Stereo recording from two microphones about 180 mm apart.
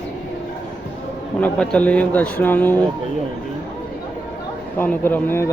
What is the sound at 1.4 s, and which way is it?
Speech, 5° left (ahead or behind).